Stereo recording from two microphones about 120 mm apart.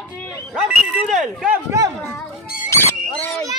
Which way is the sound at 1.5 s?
25° right (ahead or behind).